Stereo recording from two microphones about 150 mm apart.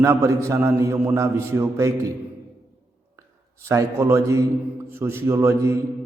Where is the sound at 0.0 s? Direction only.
20° right (ahead or behind).